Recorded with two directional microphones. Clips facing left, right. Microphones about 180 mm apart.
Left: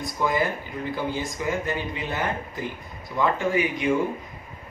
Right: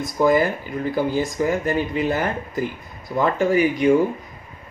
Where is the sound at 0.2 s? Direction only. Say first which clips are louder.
Right 7 dB; 40° right (ahead or behind).